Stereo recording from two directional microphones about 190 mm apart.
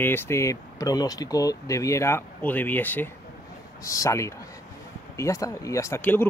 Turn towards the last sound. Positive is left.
turn(degrees=10)  # may be behind; listen again after turning